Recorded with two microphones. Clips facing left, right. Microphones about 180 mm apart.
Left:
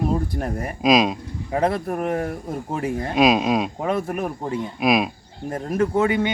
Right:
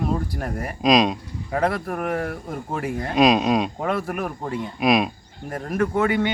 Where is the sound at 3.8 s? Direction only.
20° left (ahead or behind).